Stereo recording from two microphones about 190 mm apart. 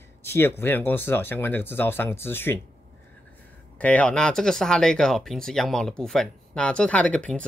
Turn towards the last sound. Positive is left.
turn(degrees=5)  # may be behind; listen again after turning